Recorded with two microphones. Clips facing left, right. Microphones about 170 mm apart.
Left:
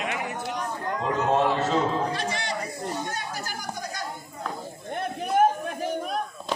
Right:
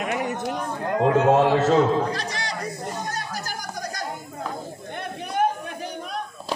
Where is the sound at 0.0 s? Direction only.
40° right (ahead or behind).